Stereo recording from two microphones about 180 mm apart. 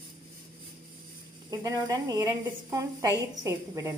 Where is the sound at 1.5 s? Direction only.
20° right (ahead or behind).